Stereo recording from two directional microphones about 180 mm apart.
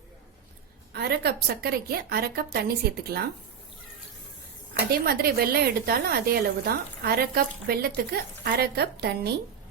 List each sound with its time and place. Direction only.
0.9 s a woman's voice: 60° right (ahead or behind)
4.7 s a woman's voice: 55° right (ahead or behind)